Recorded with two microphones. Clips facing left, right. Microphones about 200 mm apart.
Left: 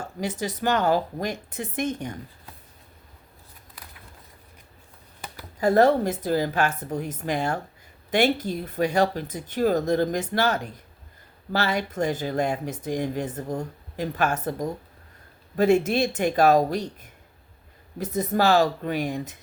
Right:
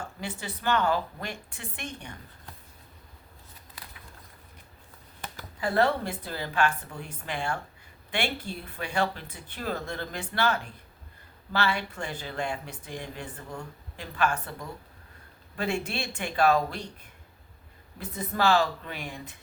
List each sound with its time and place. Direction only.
0.2 s speech: 40° left (ahead or behind)
5.5 s speech: 40° left (ahead or behind)
18.0 s speech: 40° left (ahead or behind)